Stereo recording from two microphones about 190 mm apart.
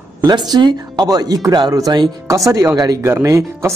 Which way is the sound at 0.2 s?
20° right (ahead or behind).